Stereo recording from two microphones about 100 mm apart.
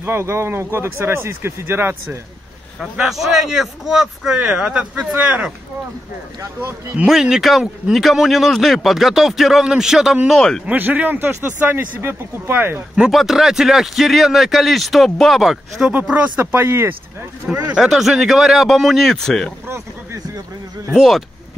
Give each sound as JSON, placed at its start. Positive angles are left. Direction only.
{"t": 0.0, "sound": "speech", "side_deg": -25}
{"t": 2.8, "sound": "speech", "side_deg": -5}
{"t": 7.1, "sound": "speech", "side_deg": -5}
{"t": 10.7, "sound": "speech", "side_deg": -15}
{"t": 15.9, "sound": "speech", "side_deg": -15}
{"t": 17.7, "sound": "speech", "side_deg": -5}
{"t": 20.9, "sound": "speech", "side_deg": 0}